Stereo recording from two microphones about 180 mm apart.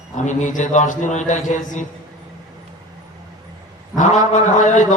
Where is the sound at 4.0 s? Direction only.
40° left (ahead or behind).